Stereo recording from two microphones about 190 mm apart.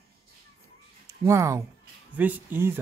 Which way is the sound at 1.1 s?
15° right (ahead or behind).